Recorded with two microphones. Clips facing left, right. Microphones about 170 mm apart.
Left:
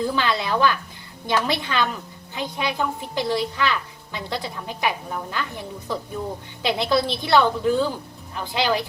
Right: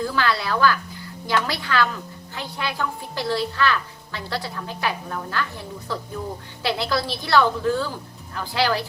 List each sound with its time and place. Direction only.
0.0 s a woman's voice: 20° left (ahead or behind)